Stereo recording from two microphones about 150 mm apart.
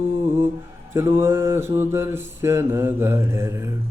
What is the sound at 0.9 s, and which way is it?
Mantra, 15° right (ahead or behind).